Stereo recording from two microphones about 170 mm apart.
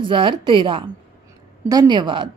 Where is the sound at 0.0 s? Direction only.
30° right (ahead or behind).